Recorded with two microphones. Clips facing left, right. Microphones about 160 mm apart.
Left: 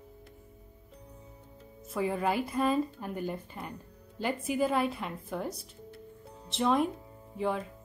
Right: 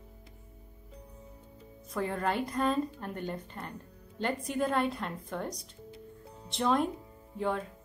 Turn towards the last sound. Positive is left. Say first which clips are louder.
# left 1 dB
turn(degrees=0)  # may be behind; listen again after turning